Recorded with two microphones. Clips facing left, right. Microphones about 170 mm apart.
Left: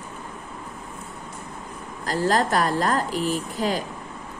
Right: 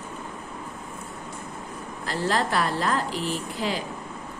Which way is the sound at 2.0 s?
40° left (ahead or behind).